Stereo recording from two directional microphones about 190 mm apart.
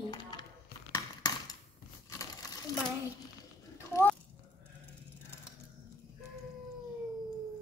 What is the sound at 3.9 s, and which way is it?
Speech, 15° left (ahead or behind).